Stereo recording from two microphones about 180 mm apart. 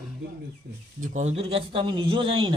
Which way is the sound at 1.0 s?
40° right (ahead or behind).